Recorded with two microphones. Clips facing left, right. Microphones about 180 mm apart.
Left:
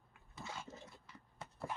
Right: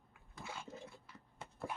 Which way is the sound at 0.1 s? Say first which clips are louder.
Even; 5° right (ahead or behind).